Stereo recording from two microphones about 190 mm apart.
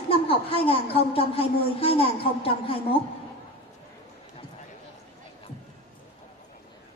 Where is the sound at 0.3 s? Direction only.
30° left (ahead or behind).